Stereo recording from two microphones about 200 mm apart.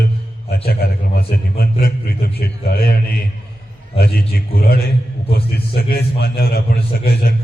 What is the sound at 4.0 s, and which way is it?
A man's voice, 50° left (ahead or behind).